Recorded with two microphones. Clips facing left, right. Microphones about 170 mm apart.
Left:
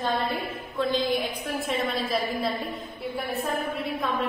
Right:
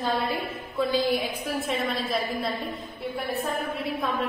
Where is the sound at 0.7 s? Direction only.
5° right (ahead or behind).